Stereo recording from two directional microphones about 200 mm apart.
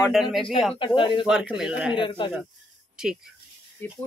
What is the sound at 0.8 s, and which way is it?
Speech, 25° left (ahead or behind).